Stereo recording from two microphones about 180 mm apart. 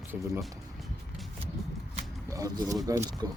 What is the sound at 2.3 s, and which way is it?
Speech, 20° right (ahead or behind).